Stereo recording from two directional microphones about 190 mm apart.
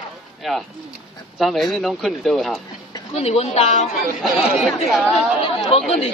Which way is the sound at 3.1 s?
35° left (ahead or behind).